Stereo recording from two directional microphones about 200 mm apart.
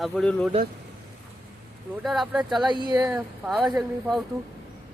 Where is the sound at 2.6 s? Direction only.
25° right (ahead or behind).